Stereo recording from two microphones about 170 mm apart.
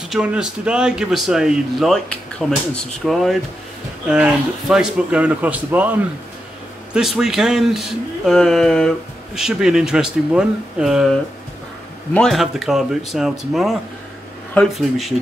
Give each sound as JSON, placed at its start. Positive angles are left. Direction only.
{"t": 0.1, "sound": "speech", "side_deg": -5}